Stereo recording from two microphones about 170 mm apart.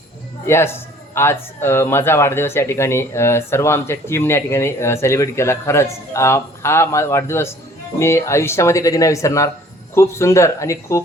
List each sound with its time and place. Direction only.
0.4 s speech: 15° left (ahead or behind)